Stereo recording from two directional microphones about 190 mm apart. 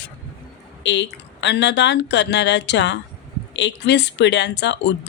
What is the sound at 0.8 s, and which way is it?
A woman's voice, 70° left (ahead or behind).